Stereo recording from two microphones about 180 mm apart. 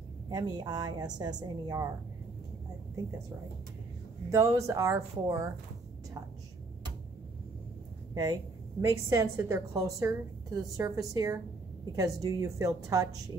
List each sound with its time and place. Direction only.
0.3 s a woman's voice: 25° right (ahead or behind)
4.3 s a woman's voice: 15° right (ahead or behind)
8.1 s a woman's voice: 20° right (ahead or behind)